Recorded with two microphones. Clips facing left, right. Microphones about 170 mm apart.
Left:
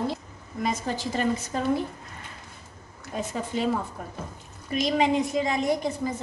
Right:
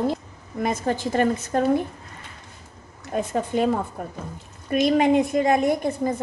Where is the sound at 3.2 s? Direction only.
55° right (ahead or behind).